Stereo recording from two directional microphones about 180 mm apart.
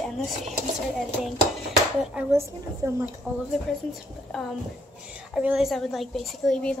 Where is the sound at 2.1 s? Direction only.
15° right (ahead or behind).